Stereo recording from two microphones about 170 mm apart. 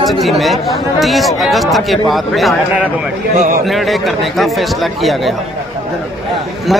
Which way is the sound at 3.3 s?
45° right (ahead or behind).